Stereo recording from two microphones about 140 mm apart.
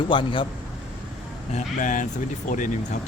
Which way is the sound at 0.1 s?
35° left (ahead or behind).